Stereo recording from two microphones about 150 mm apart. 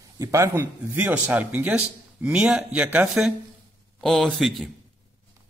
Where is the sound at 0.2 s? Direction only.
20° right (ahead or behind); by 4.6 s centre (ahead or behind).